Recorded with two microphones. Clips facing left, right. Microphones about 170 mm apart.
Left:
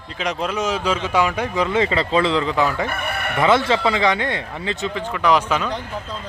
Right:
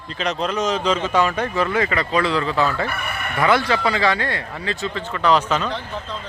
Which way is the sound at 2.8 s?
55° left (ahead or behind).